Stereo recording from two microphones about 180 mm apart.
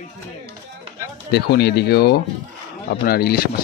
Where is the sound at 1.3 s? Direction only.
65° left (ahead or behind).